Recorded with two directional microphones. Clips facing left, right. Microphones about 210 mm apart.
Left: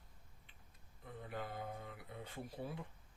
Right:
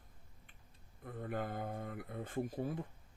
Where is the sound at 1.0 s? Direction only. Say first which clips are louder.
Right 6 dB; 50° right (ahead or behind).